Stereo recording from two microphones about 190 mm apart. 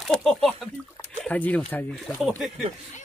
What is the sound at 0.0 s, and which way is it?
Speech, centre (ahead or behind).